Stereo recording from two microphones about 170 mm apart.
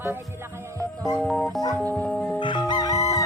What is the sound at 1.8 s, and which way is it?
Speech, 10° left (ahead or behind).